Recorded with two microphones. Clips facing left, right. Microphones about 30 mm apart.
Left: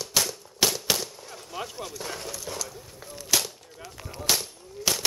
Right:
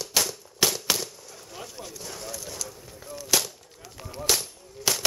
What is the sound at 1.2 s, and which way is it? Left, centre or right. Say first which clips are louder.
Chop: left 3 dB; left.